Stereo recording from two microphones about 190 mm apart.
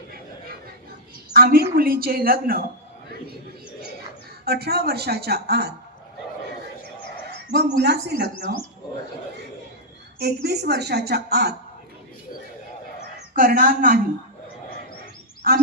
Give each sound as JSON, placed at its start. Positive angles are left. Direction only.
{"t": 1.3, "sound": "a woman's voice", "side_deg": -50}
{"t": 4.4, "sound": "a woman's voice", "side_deg": -55}
{"t": 7.5, "sound": "a woman's voice", "side_deg": -60}
{"t": 10.2, "sound": "a woman's voice", "side_deg": -60}
{"t": 13.3, "sound": "a woman's voice", "side_deg": -45}
{"t": 15.5, "sound": "a woman's voice", "side_deg": -55}